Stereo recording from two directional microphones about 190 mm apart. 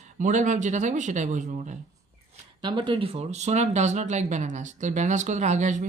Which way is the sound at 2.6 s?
25° right (ahead or behind).